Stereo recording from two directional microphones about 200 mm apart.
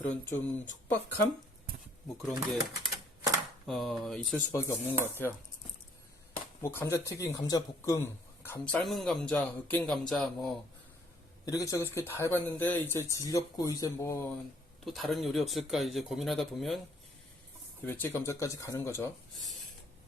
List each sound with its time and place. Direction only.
0.0 s speech: 10° left (ahead or behind)
2.2 s speech: centre (ahead or behind)
6.6 s speech: 10° left (ahead or behind)
11.4 s speech: 15° left (ahead or behind)
14.8 s speech: centre (ahead or behind)
17.8 s speech: 10° left (ahead or behind)